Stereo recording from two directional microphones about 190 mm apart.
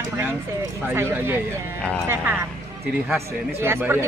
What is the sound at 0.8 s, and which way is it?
Speech, 10° right (ahead or behind).